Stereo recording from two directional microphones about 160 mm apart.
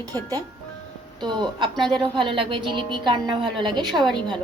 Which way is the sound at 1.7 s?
Centre (ahead or behind).